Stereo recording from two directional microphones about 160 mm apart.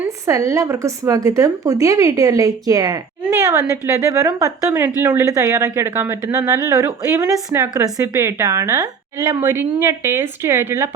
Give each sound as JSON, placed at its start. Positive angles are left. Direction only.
{"t": 0.3, "sound": "a woman's voice", "side_deg": -20}